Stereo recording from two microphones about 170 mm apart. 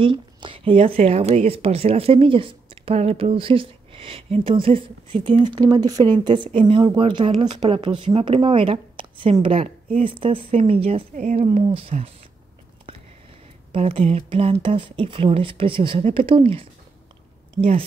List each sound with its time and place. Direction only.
0.0 s a sound: 30° right (ahead or behind)
0.7 s speech: 40° right (ahead or behind)
13.7 s speech: 35° right (ahead or behind)